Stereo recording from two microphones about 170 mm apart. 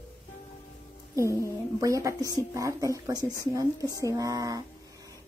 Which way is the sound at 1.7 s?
20° right (ahead or behind).